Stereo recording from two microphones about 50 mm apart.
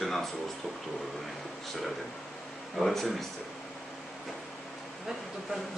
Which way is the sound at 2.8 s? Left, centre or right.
Centre.